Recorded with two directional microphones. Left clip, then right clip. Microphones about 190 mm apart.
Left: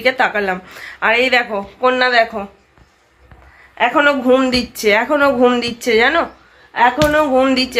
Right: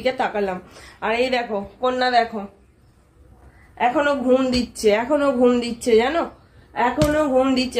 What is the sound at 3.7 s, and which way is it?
Speech, 15° left (ahead or behind).